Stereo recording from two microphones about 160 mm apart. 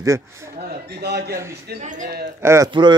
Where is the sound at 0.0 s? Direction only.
20° right (ahead or behind).